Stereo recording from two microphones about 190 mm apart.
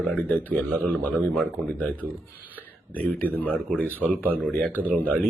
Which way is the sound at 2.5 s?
10° left (ahead or behind).